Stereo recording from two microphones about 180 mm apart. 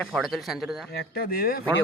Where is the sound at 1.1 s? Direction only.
55° left (ahead or behind).